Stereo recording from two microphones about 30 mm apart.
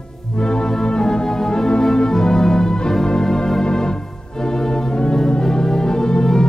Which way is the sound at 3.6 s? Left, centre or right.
Left.